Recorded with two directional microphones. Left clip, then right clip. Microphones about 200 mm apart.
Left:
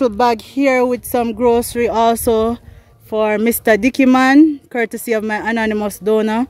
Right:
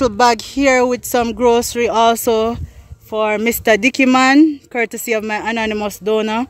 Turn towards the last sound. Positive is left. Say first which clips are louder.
# left 1 dB
turn(degrees=15)  # may be behind; listen again after turning